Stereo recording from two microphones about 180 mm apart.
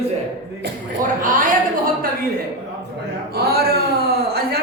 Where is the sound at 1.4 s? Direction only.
50° right (ahead or behind).